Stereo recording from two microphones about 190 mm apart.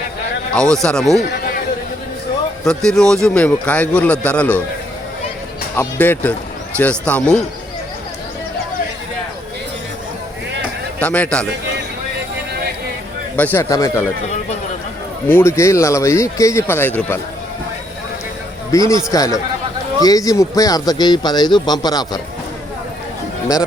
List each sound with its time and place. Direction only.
0.5 s speech: 5° left (ahead or behind)
2.6 s speech: 5° left (ahead or behind)
5.7 s speech: 10° left (ahead or behind)
11.0 s speech: 5° left (ahead or behind)
13.3 s speech: 10° left (ahead or behind)
15.3 s speech: 15° left (ahead or behind)
18.9 s speech: 15° left (ahead or behind)